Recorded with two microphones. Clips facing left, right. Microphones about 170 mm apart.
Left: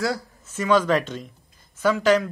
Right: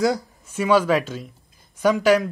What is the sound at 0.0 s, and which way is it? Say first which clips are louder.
Speech: right 5 dB; 15° right (ahead or behind).